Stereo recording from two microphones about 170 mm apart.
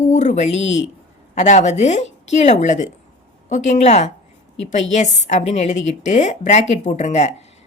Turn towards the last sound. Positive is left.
turn(degrees=40)  # may be behind; listen again after turning